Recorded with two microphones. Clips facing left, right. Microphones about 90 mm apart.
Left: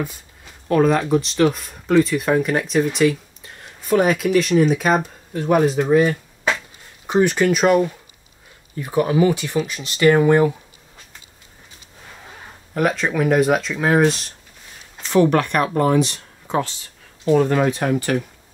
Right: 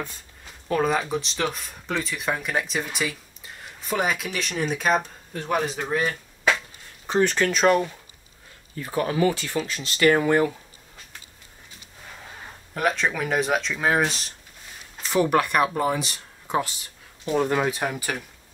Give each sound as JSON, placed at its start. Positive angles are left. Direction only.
{"t": 0.7, "sound": "speech", "side_deg": 0}
{"t": 8.7, "sound": "speech", "side_deg": 15}
{"t": 12.7, "sound": "speech", "side_deg": 0}